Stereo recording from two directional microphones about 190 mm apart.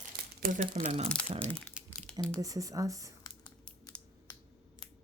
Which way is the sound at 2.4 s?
15° right (ahead or behind).